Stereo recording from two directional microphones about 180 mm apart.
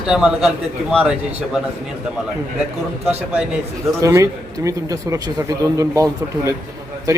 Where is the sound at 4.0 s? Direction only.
15° right (ahead or behind).